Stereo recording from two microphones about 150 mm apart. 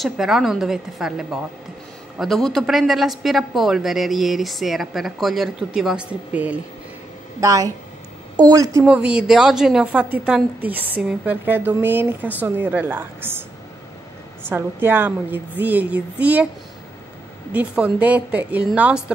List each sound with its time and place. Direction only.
0.0 s speech: centre (ahead or behind)
7.3 s a woman's voice: 25° right (ahead or behind)
8.8 s a woman's voice: 5° right (ahead or behind)
14.5 s a woman's voice: 15° right (ahead or behind)
17.5 s a woman's voice: 10° right (ahead or behind)